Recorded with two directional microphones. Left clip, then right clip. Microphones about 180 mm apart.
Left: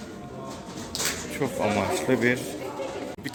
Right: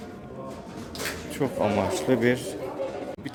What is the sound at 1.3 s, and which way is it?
Speech, 20° right (ahead or behind).